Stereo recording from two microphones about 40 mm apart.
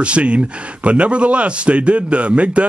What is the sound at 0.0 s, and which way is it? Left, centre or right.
Speech, right.